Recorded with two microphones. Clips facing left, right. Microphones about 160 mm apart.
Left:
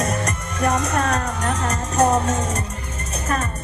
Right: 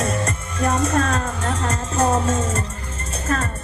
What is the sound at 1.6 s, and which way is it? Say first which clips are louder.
Music: left 2 dB; 25° right (ahead or behind).